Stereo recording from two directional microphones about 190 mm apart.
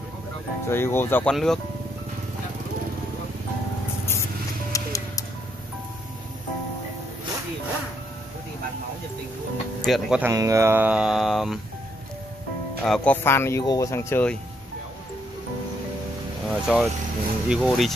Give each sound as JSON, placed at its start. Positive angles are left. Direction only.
{"t": 0.7, "sound": "speech", "side_deg": 10}
{"t": 4.7, "sound": "music", "side_deg": 15}
{"t": 9.8, "sound": "speech", "side_deg": 0}
{"t": 10.3, "sound": "speech", "side_deg": -15}
{"t": 12.8, "sound": "speech", "side_deg": 5}
{"t": 16.4, "sound": "speech", "side_deg": 0}